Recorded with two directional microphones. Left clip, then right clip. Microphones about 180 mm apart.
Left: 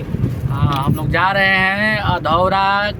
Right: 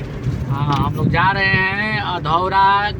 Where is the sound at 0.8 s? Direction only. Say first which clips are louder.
Left 1 dB; 40° left (ahead or behind).